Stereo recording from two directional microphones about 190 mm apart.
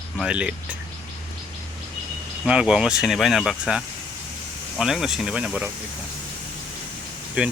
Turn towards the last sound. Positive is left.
turn(degrees=-5)  # may be behind; listen again after turning